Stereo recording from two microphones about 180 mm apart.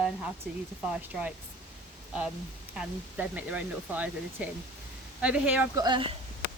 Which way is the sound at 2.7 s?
10° right (ahead or behind).